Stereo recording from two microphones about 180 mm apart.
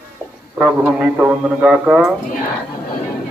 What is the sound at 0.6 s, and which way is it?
Speech, 5° right (ahead or behind).